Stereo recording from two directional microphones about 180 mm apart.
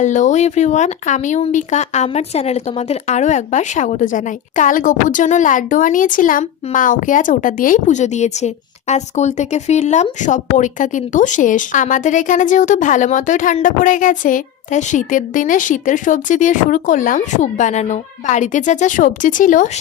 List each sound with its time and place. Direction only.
0.0 s speech: 40° left (ahead or behind)